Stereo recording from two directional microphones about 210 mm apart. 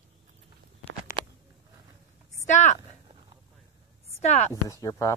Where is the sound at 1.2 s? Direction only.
25° right (ahead or behind).